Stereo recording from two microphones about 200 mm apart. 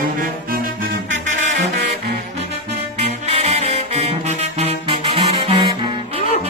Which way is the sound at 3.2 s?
35° right (ahead or behind).